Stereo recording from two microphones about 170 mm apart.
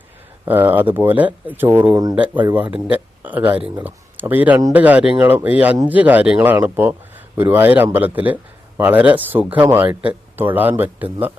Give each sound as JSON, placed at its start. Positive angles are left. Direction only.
{"t": 0.4, "sound": "speech", "side_deg": -10}
{"t": 1.9, "sound": "speech", "side_deg": -20}
{"t": 2.1, "sound": "speech", "side_deg": -10}